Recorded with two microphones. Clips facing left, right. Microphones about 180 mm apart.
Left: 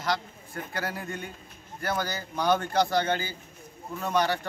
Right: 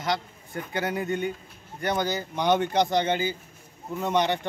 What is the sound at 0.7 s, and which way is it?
Speech, centre (ahead or behind).